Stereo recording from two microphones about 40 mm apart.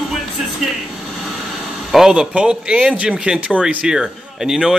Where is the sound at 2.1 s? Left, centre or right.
Right.